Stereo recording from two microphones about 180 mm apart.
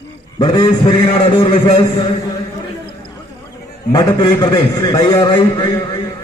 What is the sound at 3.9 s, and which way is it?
A man's voice, 25° left (ahead or behind).